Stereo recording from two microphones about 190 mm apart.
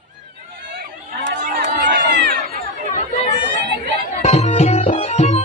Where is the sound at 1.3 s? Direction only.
45° right (ahead or behind).